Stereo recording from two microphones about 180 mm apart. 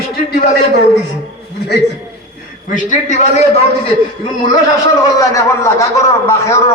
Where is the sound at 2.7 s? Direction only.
45° left (ahead or behind).